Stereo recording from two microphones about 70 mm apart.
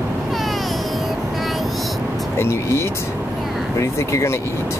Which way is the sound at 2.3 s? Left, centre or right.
Left.